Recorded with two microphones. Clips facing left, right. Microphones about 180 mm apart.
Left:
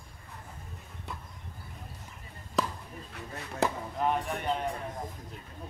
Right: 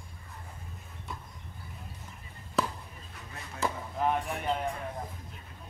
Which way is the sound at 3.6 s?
65° left (ahead or behind).